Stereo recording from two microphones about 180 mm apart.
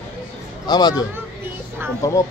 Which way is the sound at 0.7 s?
20° left (ahead or behind).